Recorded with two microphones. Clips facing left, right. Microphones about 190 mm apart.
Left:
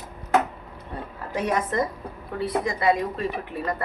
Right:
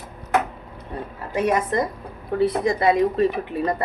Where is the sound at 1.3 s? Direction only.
10° right (ahead or behind).